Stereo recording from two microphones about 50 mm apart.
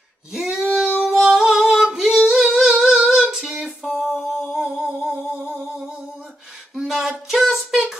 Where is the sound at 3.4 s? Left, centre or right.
Centre.